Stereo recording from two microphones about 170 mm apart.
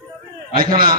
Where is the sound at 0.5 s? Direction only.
60° right (ahead or behind).